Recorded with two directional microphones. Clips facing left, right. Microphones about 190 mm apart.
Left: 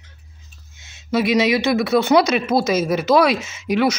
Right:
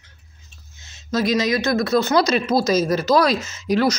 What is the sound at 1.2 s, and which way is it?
Speech, 70° left (ahead or behind).